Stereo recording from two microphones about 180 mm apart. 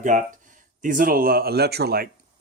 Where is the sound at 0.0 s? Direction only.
45° right (ahead or behind); by 2.0 s 60° right (ahead or behind).